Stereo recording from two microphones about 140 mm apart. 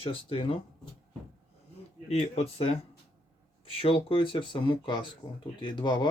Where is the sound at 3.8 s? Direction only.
40° left (ahead or behind).